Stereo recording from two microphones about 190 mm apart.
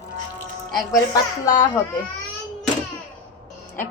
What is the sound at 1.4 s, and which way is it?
Speech, 15° left (ahead or behind).